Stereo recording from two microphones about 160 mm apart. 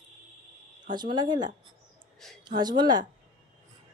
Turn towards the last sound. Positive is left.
turn(degrees=-25)  # may be behind; listen again after turning